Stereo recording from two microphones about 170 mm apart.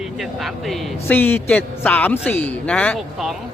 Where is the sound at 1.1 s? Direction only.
10° left (ahead or behind).